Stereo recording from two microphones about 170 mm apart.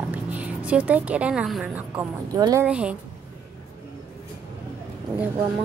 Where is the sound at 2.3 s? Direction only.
20° right (ahead or behind).